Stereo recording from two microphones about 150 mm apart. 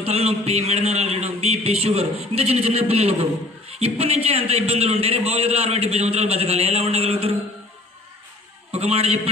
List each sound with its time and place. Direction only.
0.0 s a man's voice: 40° right (ahead or behind)
8.7 s a man's voice: 45° right (ahead or behind)